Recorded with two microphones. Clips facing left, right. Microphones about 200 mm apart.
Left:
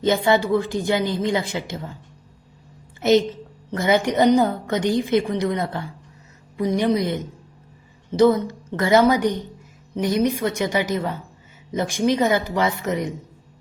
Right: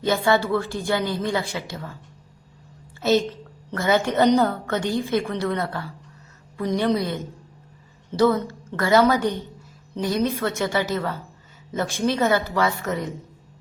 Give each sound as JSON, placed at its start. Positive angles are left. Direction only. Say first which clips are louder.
{"t": 0.0, "sound": "speech", "louder": "left 2 dB", "side_deg": 20}
{"t": 3.0, "sound": "a woman's voice", "louder": "left 3 dB", "side_deg": 20}